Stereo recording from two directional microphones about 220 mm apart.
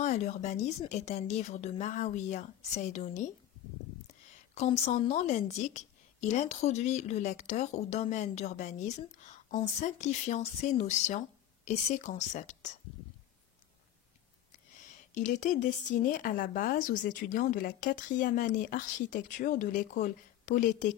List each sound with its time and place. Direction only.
0.0 s a woman's voice: 30° left (ahead or behind)
15.1 s a woman's voice: 35° left (ahead or behind)